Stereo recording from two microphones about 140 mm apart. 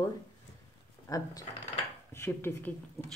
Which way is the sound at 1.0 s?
25° left (ahead or behind).